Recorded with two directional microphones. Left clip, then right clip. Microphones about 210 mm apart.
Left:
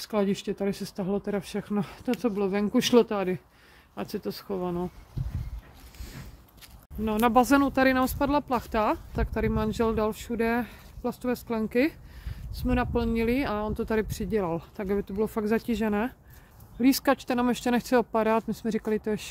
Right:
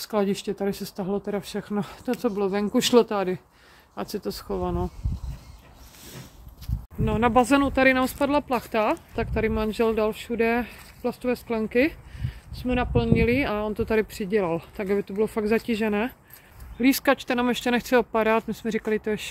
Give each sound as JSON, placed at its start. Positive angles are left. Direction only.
{"t": 0.0, "sound": "speech", "side_deg": 5}
{"t": 7.1, "sound": "speech", "side_deg": 10}
{"t": 16.8, "sound": "speech", "side_deg": 10}